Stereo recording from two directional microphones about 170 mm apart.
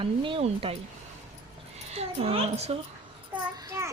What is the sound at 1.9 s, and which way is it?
Speech, 35° right (ahead or behind).